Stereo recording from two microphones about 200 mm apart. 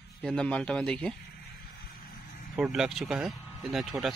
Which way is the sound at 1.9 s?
45° left (ahead or behind).